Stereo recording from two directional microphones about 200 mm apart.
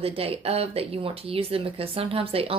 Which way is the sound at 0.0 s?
30° right (ahead or behind).